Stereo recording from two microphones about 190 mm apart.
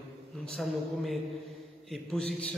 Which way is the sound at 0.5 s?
Centre (ahead or behind).